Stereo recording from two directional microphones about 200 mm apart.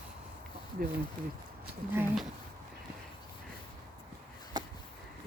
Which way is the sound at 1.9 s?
10° right (ahead or behind).